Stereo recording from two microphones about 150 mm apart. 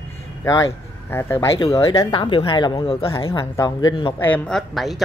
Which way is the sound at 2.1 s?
35° left (ahead or behind).